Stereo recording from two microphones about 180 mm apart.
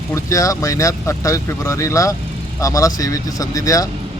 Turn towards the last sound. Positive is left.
turn(degrees=20)  # may be behind; listen again after turning